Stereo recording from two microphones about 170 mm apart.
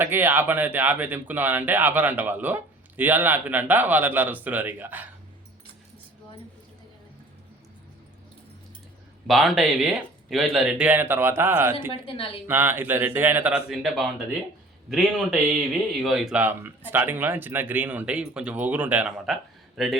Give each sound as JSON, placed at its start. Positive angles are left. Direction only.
{"t": 0.0, "sound": "speech", "side_deg": -10}
{"t": 9.2, "sound": "speech", "side_deg": 0}
{"t": 11.9, "sound": "speech", "side_deg": 30}
{"t": 12.5, "sound": "speech", "side_deg": -15}